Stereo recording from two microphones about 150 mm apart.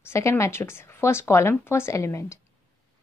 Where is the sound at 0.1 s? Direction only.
20° left (ahead or behind).